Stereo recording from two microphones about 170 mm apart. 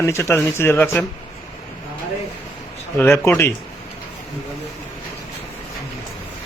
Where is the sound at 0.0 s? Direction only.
15° left (ahead or behind).